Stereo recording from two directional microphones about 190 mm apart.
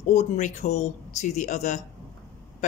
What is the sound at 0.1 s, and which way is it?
A woman's voice, 35° left (ahead or behind).